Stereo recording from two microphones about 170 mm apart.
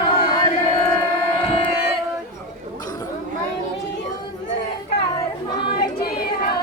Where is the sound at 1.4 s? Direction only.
35° left (ahead or behind).